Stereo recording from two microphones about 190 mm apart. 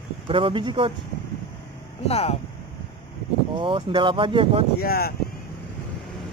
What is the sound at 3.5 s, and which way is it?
Speech, 25° right (ahead or behind).